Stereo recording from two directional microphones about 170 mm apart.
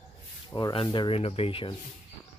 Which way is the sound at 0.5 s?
25° left (ahead or behind).